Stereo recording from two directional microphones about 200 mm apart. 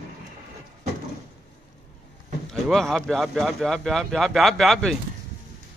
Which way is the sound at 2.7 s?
Centre (ahead or behind).